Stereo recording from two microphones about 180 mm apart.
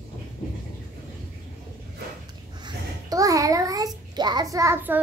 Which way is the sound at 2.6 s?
20° right (ahead or behind).